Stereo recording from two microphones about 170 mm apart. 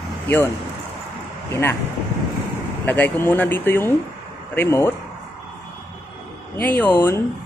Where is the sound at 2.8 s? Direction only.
10° left (ahead or behind).